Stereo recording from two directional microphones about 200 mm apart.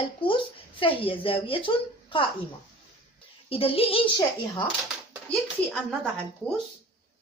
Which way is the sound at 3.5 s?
30° left (ahead or behind).